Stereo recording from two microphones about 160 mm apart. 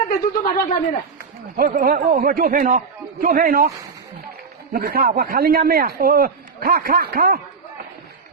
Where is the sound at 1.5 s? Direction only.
65° right (ahead or behind).